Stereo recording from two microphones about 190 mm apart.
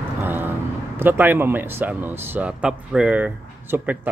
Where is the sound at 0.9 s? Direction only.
10° right (ahead or behind).